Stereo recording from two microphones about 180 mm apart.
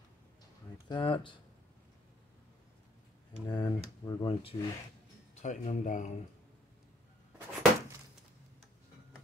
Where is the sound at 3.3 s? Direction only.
20° left (ahead or behind).